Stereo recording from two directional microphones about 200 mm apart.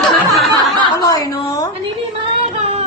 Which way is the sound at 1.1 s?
15° left (ahead or behind).